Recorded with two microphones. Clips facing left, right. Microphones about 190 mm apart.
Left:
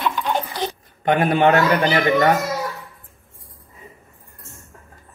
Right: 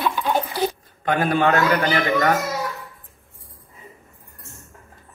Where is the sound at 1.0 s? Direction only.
25° left (ahead or behind).